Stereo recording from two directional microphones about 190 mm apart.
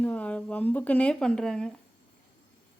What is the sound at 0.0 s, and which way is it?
Speech, 5° left (ahead or behind).